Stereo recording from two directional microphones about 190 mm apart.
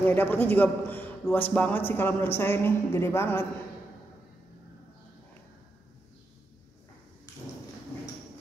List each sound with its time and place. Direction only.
0.0 s a man's voice: 10° left (ahead or behind)